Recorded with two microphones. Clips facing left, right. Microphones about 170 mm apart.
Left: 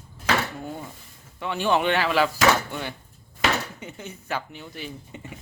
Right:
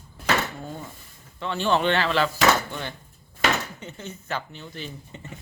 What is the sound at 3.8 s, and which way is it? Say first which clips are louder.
Speech: even; 10° left (ahead or behind).